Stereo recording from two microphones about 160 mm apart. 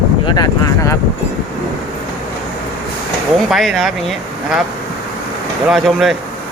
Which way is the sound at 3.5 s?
Centre (ahead or behind).